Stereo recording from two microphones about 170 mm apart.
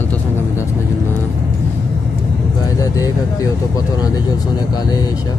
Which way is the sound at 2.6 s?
20° left (ahead or behind).